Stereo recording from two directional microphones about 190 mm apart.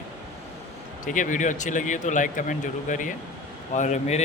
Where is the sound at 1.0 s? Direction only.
45° left (ahead or behind).